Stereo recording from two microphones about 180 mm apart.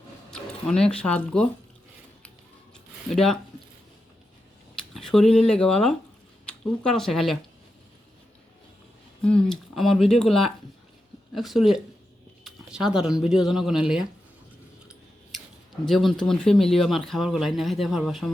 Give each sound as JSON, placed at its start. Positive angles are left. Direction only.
{"t": 0.3, "sound": "speech", "side_deg": 5}
{"t": 3.1, "sound": "speech", "side_deg": 0}
{"t": 4.9, "sound": "speech", "side_deg": 0}
{"t": 9.2, "sound": "speech", "side_deg": 5}
{"t": 15.9, "sound": "speech", "side_deg": 0}